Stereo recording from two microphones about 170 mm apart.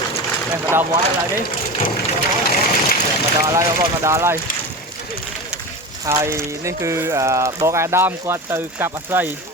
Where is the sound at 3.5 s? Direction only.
15° right (ahead or behind).